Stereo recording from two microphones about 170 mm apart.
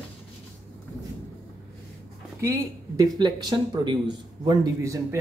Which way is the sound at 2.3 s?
20° right (ahead or behind).